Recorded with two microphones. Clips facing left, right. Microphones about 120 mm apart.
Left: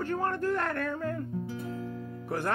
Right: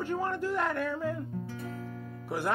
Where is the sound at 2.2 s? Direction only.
10° right (ahead or behind).